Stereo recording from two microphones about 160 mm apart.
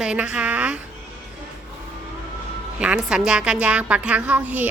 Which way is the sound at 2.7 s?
5° right (ahead or behind).